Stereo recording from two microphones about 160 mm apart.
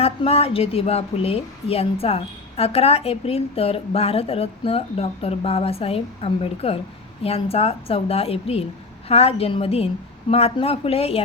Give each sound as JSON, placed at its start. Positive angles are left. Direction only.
{"t": 0.0, "sound": "a woman's voice", "side_deg": 40}